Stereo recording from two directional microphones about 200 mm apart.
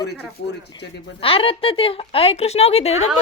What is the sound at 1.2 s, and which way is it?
A woman's voice, 25° left (ahead or behind).